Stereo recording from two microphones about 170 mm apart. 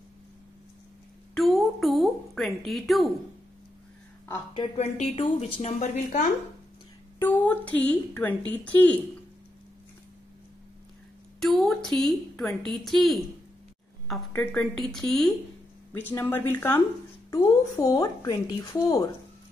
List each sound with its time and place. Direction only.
1.3 s a sound: centre (ahead or behind)
4.6 s a woman's voice: 35° left (ahead or behind)
7.2 s a woman's voice: 10° left (ahead or behind)
11.3 s a woman's voice: centre (ahead or behind)
14.3 s a woman's voice: 10° left (ahead or behind)